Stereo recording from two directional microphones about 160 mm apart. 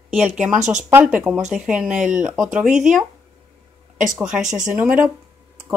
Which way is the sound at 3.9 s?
50° right (ahead or behind).